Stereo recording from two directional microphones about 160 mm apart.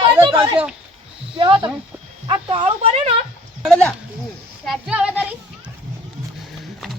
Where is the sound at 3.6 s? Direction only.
Centre (ahead or behind).